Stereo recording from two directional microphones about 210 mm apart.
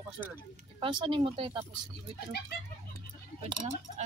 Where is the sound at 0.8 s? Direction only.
25° right (ahead or behind).